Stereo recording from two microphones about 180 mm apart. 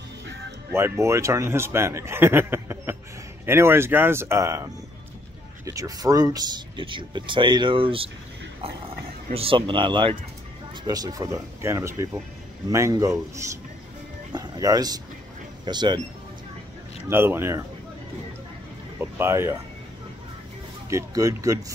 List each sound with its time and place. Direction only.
0.7 s speech: 15° right (ahead or behind)
5.7 s speech: 20° right (ahead or behind)
14.3 s speech: 20° right (ahead or behind)
17.1 s speech: 10° right (ahead or behind)
18.9 s speech: 15° right (ahead or behind)
20.9 s speech: 15° right (ahead or behind)